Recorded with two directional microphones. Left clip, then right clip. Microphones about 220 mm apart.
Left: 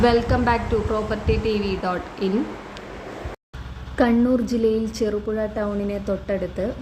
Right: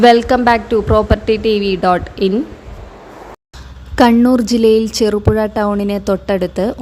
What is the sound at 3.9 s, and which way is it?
A woman's voice, 45° right (ahead or behind).